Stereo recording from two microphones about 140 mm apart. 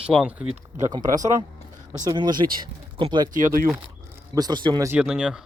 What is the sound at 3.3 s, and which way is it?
Speech, 70° right (ahead or behind).